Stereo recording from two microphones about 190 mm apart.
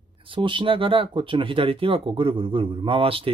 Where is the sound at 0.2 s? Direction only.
25° right (ahead or behind).